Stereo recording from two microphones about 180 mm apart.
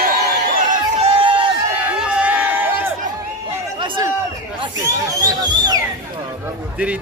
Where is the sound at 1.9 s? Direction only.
5° right (ahead or behind).